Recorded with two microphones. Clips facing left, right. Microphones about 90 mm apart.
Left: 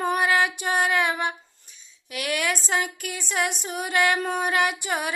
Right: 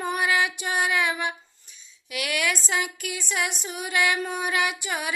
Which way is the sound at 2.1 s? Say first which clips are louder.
Left 1 dB; 35° left (ahead or behind).